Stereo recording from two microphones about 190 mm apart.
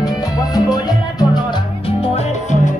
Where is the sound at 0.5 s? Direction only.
20° left (ahead or behind).